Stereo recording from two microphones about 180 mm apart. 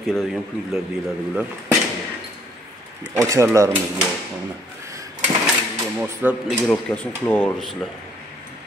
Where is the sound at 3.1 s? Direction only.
15° right (ahead or behind).